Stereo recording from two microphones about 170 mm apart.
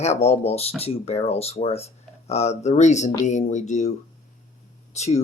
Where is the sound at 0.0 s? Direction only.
40° left (ahead or behind).